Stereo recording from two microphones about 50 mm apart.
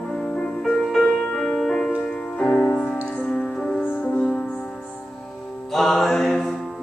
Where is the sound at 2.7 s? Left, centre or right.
Left.